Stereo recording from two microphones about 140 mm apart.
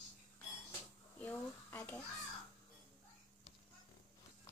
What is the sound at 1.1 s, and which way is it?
Speech, 10° left (ahead or behind).